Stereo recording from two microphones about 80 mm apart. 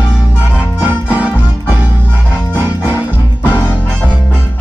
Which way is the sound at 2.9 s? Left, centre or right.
Left.